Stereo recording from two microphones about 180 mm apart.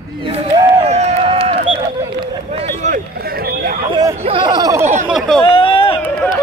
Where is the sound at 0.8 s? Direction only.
35° right (ahead or behind).